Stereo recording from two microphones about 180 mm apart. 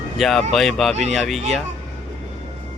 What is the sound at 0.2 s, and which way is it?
Speech, centre (ahead or behind).